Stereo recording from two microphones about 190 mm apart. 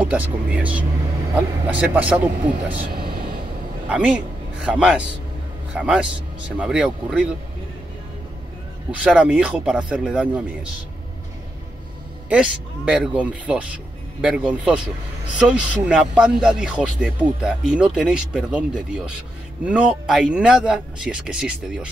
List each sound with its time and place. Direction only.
0.0 s speech: 5° right (ahead or behind)
3.9 s speech: 5° right (ahead or behind)
9.0 s speech: 5° right (ahead or behind)
12.3 s speech: 5° right (ahead or behind)